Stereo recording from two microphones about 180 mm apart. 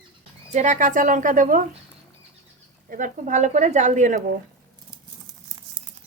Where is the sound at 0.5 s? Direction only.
45° right (ahead or behind).